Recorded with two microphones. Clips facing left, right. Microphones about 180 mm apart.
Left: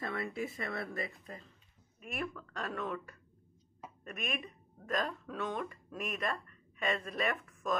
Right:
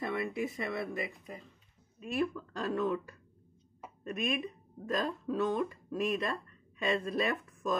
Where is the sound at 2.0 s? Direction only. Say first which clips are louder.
Right 7 dB; 30° right (ahead or behind).